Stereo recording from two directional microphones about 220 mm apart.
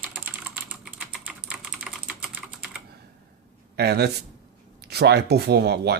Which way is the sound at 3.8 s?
50° right (ahead or behind).